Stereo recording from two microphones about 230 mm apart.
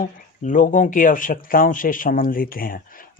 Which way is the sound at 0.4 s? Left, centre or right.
Left.